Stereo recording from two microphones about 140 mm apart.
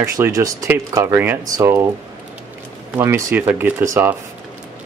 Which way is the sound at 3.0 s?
15° right (ahead or behind).